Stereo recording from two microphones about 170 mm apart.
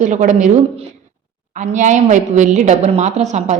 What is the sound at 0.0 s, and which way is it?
Speech, 45° right (ahead or behind).